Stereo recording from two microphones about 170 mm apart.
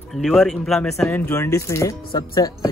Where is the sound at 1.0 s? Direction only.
15° left (ahead or behind).